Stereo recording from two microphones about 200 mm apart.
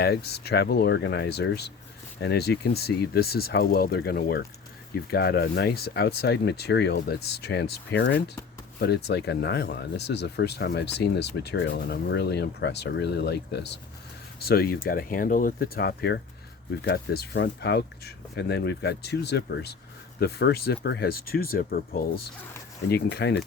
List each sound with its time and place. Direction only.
0.0 s speech: 55° left (ahead or behind)